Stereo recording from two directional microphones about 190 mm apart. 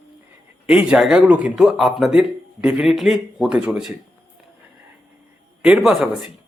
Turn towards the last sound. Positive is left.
turn(degrees=-5)  # may be behind; listen again after turning